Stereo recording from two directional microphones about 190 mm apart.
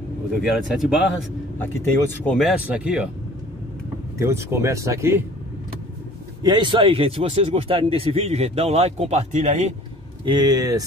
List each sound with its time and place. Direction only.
0.3 s speech: 5° right (ahead or behind)
1.6 s speech: 10° left (ahead or behind)
4.2 s speech: 15° right (ahead or behind)
6.4 s speech: 25° right (ahead or behind)
10.2 s speech: 20° right (ahead or behind)